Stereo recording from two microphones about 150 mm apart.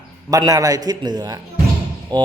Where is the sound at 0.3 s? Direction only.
25° right (ahead or behind).